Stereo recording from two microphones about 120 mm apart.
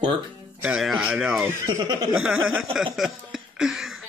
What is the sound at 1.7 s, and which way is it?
Speech, 30° right (ahead or behind).